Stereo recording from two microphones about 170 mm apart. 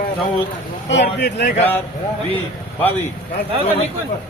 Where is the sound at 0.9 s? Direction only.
90° left.